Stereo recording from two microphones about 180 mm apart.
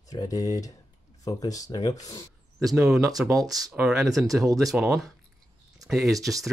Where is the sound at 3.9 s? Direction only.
Centre (ahead or behind).